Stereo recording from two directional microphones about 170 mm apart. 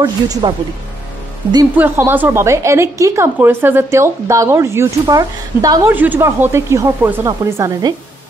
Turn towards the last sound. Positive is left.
turn(degrees=-15)  # may be behind; listen again after turning